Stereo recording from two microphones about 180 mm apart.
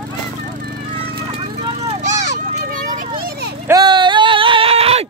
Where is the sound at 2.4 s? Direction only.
45° right (ahead or behind); by 3.5 s 60° right (ahead or behind).